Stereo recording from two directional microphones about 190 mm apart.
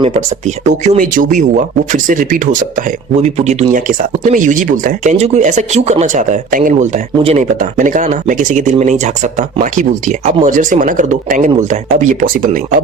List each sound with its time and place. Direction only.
0.0 s speech: 35° right (ahead or behind)
7.2 s speech: 30° right (ahead or behind)
7.6 s speech: 45° right (ahead or behind)